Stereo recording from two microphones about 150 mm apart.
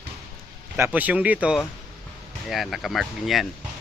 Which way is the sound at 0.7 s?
10° right (ahead or behind).